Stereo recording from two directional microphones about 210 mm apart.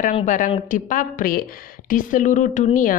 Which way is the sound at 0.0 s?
35° left (ahead or behind).